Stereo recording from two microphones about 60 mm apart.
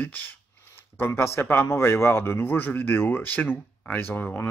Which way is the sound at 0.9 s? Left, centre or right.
Left.